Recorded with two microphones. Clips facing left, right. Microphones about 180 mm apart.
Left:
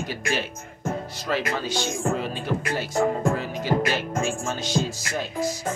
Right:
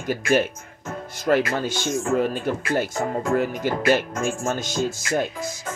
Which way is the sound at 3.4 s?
50° right (ahead or behind).